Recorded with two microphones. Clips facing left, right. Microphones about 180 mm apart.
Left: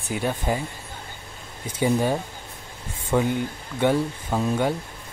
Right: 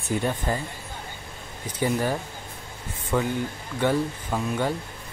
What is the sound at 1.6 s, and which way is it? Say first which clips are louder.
Speech: left 3 dB; 15° left (ahead or behind).